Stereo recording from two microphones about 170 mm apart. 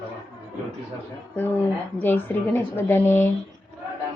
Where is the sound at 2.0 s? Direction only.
10° left (ahead or behind).